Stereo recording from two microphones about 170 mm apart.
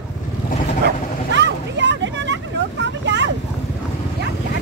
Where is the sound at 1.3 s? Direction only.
90° right.